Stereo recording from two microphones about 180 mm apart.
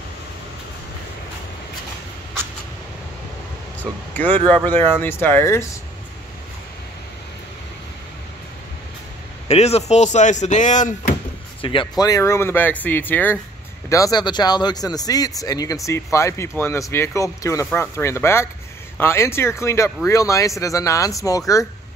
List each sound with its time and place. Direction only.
3.8 s speech: 10° left (ahead or behind)
9.5 s speech: 35° left (ahead or behind)
11.6 s speech: 30° left (ahead or behind)